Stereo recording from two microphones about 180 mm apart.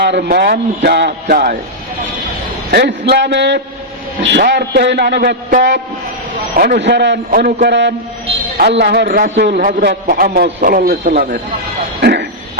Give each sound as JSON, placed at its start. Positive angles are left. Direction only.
{"t": 0.0, "sound": "a man's voice", "side_deg": -65}
{"t": 2.7, "sound": "a man's voice", "side_deg": -70}
{"t": 6.6, "sound": "a man's voice", "side_deg": -65}
{"t": 11.9, "sound": "a sound", "side_deg": -65}